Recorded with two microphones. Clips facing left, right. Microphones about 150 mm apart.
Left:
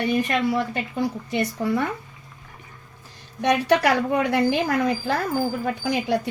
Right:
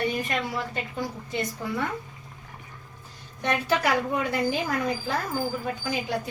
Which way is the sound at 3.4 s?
75° left (ahead or behind).